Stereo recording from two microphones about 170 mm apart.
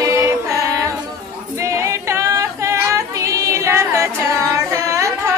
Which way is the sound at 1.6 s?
15° right (ahead or behind).